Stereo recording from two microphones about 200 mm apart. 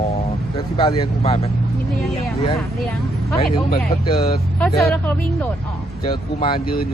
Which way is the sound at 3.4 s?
45° left (ahead or behind).